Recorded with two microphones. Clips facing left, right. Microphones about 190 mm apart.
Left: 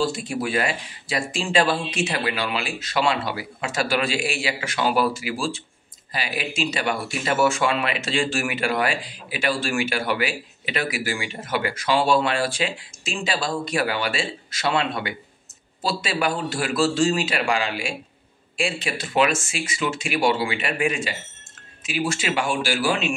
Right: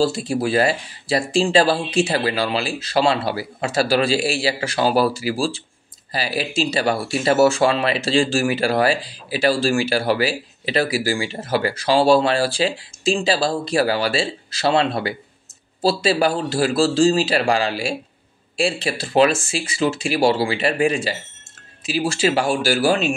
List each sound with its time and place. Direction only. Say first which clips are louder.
0.0 s speech: right 5 dB; 30° right (ahead or behind)